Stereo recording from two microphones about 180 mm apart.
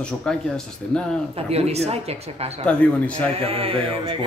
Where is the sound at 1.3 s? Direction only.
35° right (ahead or behind).